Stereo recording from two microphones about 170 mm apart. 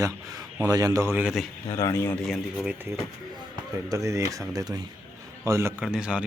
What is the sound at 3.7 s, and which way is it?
A man's voice, 20° right (ahead or behind).